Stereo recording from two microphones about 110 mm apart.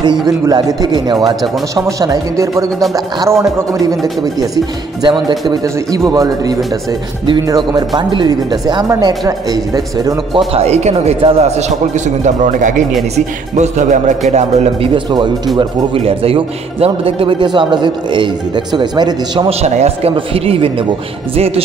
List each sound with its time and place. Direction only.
0.0 s speech: 45° right (ahead or behind); by 3.6 s 25° right (ahead or behind)
5.5 s speech: 30° right (ahead or behind)
10.3 s speech: 65° right (ahead or behind)
11.1 s speech: 60° right (ahead or behind); by 12.0 s 85° right
13.1 s speech: 90° right
15.0 s a man's voice: 45° right (ahead or behind)
16.0 s a man's voice: 60° right (ahead or behind); by 19.5 s 45° right (ahead or behind)
19.6 s speech: 70° right (ahead or behind)